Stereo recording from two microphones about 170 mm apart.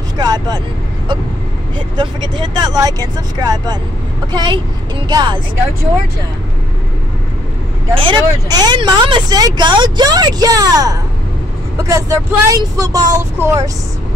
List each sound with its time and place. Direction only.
0.2 s speech: 25° right (ahead or behind)
2.0 s speech: 25° right (ahead or behind)
7.9 s speech: 30° right (ahead or behind)